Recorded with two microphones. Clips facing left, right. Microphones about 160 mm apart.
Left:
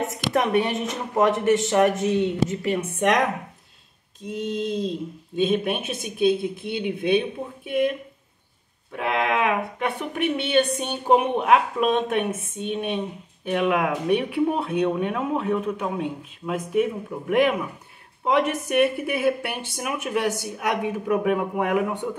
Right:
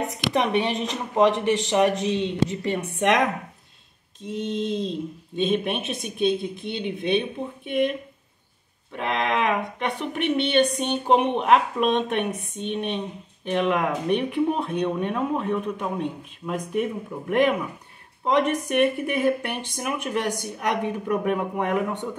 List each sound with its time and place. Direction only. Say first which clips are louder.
0.5 s speech: left 1 dB; 20° right (ahead or behind)
2.6 s speech: left 1 dB; centre (ahead or behind)
4.3 s speech: even; 5° left (ahead or behind)
8.9 s speech: left 1 dB; 5° left (ahead or behind)